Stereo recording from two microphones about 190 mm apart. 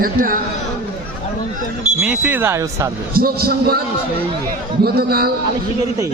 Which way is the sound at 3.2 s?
50° right (ahead or behind).